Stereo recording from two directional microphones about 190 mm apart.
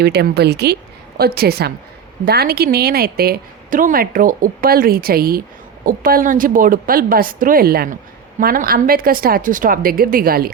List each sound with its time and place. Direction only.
0.0 s a woman's voice: 60° right (ahead or behind)